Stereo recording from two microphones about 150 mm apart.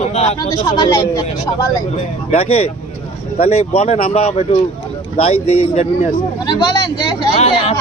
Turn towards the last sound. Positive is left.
turn(degrees=45)  # may be behind; listen again after turning